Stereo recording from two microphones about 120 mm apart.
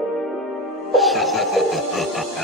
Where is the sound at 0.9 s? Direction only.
Centre (ahead or behind).